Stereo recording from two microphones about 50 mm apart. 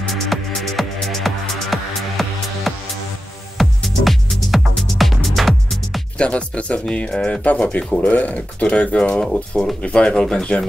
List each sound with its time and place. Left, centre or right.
0.0 s music: centre
6.1 s speech: left